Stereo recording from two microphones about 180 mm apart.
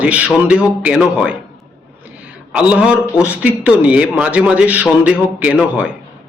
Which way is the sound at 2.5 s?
5° right (ahead or behind).